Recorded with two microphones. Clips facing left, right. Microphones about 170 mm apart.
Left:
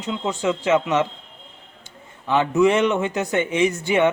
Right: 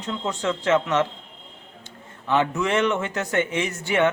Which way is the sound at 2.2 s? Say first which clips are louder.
Left 5 dB; 15° left (ahead or behind).